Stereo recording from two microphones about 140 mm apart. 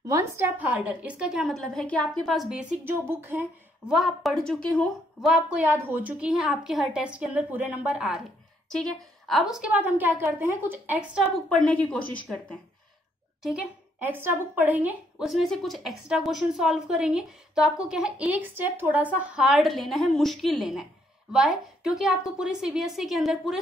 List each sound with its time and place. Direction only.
0.0 s a woman's voice: 20° right (ahead or behind); by 2.6 s centre (ahead or behind)
2.8 s a woman's voice: 15° right (ahead or behind)
3.9 s a woman's voice: centre (ahead or behind)
9.3 s a woman's voice: 5° right (ahead or behind)
11.3 s speech: 5° left (ahead or behind)
13.4 s speech: 5° right (ahead or behind)
15.2 s a woman's voice: centre (ahead or behind)